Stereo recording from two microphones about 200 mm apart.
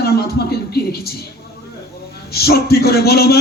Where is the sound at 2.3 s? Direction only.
50° left (ahead or behind).